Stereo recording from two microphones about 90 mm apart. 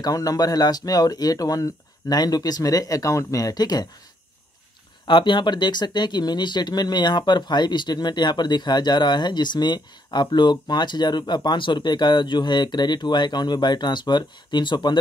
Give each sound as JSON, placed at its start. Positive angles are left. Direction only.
{"t": 0.0, "sound": "speech", "side_deg": 45}
{"t": 5.0, "sound": "speech", "side_deg": 60}